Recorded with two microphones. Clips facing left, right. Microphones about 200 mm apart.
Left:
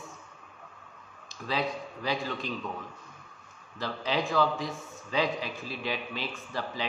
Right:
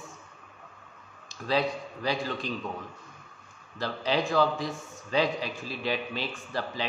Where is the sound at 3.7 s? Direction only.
35° right (ahead or behind).